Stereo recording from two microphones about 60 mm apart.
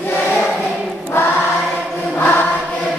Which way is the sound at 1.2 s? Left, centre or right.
Left.